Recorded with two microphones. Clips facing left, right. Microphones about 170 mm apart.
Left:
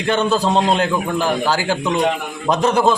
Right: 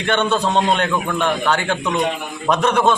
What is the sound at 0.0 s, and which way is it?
A man's voice, 35° left (ahead or behind).